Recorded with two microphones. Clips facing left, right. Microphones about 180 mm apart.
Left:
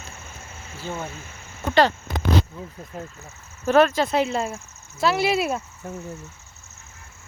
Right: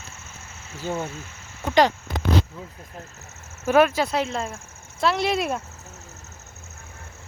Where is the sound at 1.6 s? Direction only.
15° right (ahead or behind).